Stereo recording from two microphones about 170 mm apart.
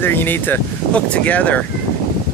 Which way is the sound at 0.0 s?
10° left (ahead or behind).